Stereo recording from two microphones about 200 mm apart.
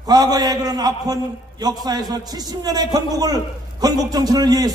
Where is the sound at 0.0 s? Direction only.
20° right (ahead or behind).